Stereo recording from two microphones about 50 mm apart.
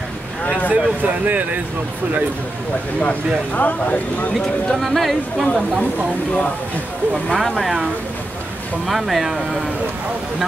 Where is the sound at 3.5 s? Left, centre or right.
Left.